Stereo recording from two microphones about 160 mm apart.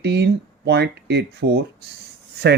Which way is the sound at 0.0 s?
90° right.